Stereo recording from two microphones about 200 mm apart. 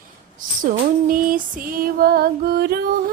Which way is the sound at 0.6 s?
45° right (ahead or behind).